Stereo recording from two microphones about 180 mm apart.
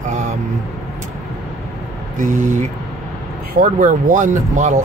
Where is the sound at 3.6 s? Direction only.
45° right (ahead or behind).